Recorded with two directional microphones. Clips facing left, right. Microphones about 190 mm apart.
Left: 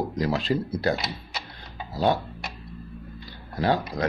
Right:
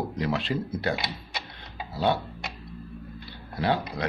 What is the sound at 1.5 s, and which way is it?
Tick-tock, 40° left (ahead or behind).